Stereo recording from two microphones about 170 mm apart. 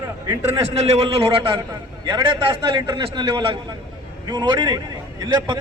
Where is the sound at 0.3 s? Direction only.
25° right (ahead or behind).